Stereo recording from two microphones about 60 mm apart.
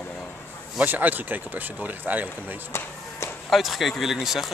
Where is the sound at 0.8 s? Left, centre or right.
Right.